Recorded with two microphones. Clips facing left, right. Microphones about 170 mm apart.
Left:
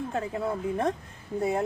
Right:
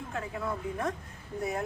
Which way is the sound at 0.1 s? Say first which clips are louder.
Left 1 dB; 30° left (ahead or behind).